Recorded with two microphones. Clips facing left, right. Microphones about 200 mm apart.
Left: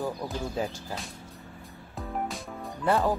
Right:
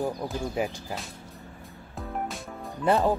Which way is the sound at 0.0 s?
15° right (ahead or behind).